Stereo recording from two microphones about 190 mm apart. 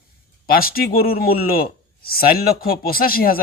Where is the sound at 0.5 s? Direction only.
50° left (ahead or behind).